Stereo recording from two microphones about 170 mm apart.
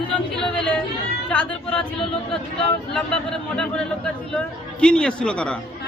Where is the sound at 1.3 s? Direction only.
5° left (ahead or behind).